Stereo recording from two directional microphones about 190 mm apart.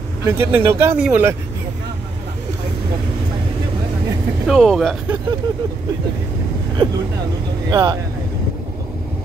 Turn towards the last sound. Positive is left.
turn(degrees=-20)  # may be behind; listen again after turning